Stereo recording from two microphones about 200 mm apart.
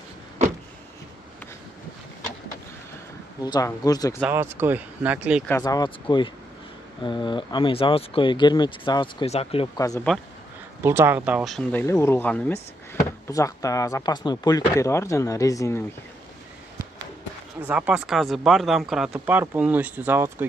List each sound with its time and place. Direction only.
3.4 s speech: 20° left (ahead or behind)
4.2 s speech: 10° right (ahead or behind)
5.5 s speech: 20° left (ahead or behind)
9.8 s speech: 15° left (ahead or behind)
10.8 s speech: 10° right (ahead or behind)
11.8 s speech: 15° left (ahead or behind)
17.6 s speech: 5° right (ahead or behind)